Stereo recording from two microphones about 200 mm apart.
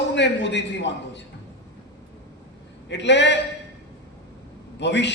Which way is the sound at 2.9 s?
60° left (ahead or behind).